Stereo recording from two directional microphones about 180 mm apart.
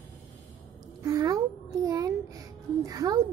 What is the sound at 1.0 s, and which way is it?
A child's voice, 20° right (ahead or behind).